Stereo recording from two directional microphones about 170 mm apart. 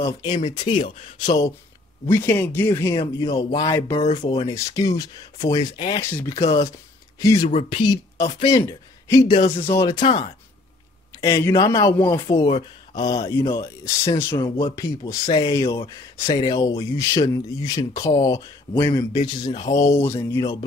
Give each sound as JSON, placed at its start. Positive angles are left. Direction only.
{"t": 0.0, "sound": "speech", "side_deg": 25}
{"t": 6.0, "sound": "speech", "side_deg": 15}
{"t": 7.4, "sound": "speech", "side_deg": 35}
{"t": 7.9, "sound": "speech", "side_deg": 20}
{"t": 9.3, "sound": "speech", "side_deg": 35}
{"t": 9.7, "sound": "speech", "side_deg": 20}
{"t": 10.0, "sound": "speech", "side_deg": 35}
{"t": 11.1, "sound": "speech", "side_deg": 15}